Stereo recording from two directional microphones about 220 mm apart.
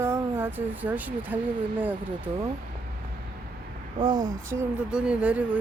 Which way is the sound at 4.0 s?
20° right (ahead or behind).